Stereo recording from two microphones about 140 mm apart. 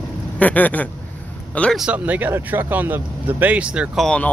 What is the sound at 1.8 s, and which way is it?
Speech, 10° right (ahead or behind).